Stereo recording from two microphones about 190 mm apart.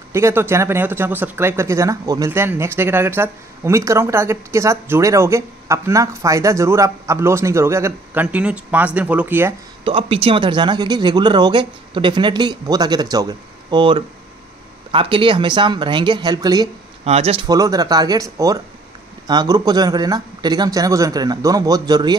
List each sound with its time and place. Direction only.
0.1 s speech: 10° right (ahead or behind)
9.8 s speech: 30° right (ahead or behind)
17.0 s speech: 30° right (ahead or behind)
17.5 s speech: 20° right (ahead or behind)